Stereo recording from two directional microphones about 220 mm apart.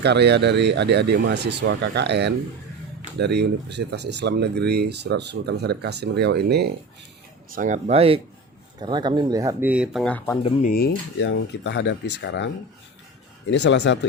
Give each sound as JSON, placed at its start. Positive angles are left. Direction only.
{"t": 0.0, "sound": "speech", "side_deg": -50}
{"t": 7.5, "sound": "speech", "side_deg": -35}
{"t": 10.4, "sound": "speech", "side_deg": 35}
{"t": 11.2, "sound": "speech", "side_deg": 55}
{"t": 13.5, "sound": "speech", "side_deg": 50}